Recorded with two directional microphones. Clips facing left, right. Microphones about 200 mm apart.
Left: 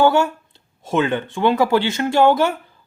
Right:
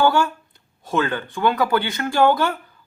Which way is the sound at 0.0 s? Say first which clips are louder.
Left 3 dB; 25° left (ahead or behind).